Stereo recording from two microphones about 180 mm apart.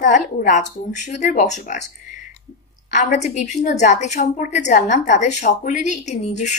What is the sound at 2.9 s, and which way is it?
A woman's voice, 40° left (ahead or behind).